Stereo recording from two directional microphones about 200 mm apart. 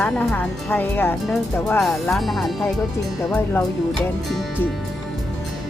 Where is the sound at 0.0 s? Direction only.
10° left (ahead or behind).